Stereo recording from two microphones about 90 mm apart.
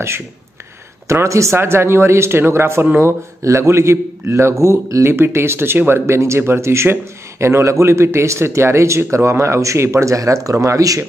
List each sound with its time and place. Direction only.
1.0 s speech: 35° right (ahead or behind)